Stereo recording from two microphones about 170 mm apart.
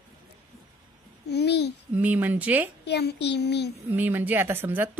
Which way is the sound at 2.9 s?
75° left (ahead or behind).